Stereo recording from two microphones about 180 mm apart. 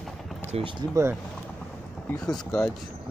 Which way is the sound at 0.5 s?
35° right (ahead or behind).